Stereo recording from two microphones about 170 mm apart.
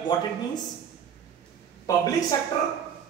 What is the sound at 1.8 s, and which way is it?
Speech, 20° left (ahead or behind).